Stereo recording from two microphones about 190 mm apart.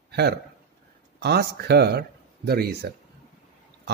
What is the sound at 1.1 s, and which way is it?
Speech, 60° right (ahead or behind).